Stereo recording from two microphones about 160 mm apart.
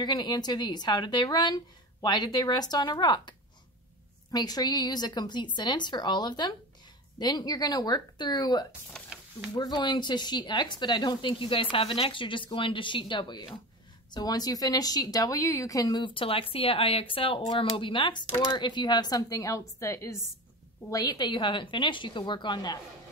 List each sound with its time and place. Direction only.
0.0 s speech: 25° left (ahead or behind)
9.0 s speech: 5° left (ahead or behind)
9.5 s a woman's voice: 30° left (ahead or behind)